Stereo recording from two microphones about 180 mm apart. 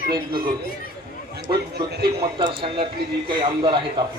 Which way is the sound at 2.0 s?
25° right (ahead or behind).